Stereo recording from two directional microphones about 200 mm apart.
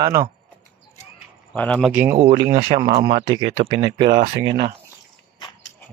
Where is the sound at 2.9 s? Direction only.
20° right (ahead or behind).